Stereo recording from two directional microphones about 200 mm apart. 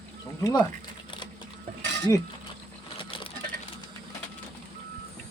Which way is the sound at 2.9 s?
25° left (ahead or behind).